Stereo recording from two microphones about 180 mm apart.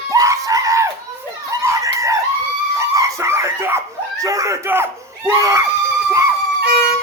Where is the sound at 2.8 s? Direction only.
15° right (ahead or behind).